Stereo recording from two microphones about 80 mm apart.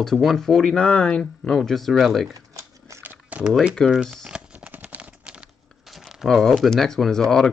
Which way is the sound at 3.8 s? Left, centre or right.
Centre.